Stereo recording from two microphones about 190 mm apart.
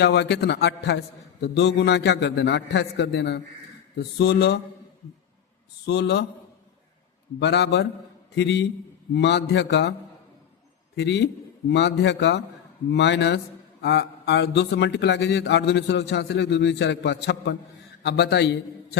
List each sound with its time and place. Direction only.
0.0 s speech: 65° left (ahead or behind)
5.8 s speech: 65° left (ahead or behind)
7.3 s speech: 65° left (ahead or behind)
10.9 s speech: 65° left (ahead or behind)